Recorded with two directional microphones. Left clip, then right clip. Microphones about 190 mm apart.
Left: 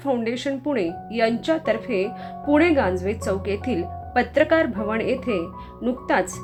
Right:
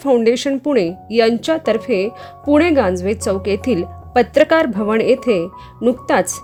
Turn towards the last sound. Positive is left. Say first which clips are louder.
# right 6 dB
turn(degrees=-55)  # may be behind; listen again after turning